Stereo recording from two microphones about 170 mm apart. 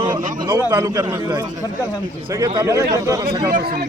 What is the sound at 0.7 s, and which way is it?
Speech, 20° right (ahead or behind).